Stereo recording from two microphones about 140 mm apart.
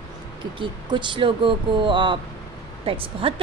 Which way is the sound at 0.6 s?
35° right (ahead or behind).